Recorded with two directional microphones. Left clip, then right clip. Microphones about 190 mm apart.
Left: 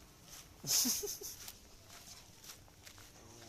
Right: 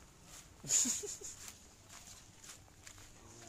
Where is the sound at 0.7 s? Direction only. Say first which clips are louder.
Left 1 dB; 15° left (ahead or behind).